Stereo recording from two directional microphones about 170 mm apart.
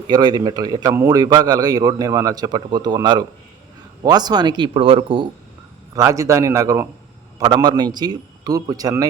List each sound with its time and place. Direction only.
0.1 s a man's voice: 25° right (ahead or behind)
5.9 s a man's voice: 20° right (ahead or behind)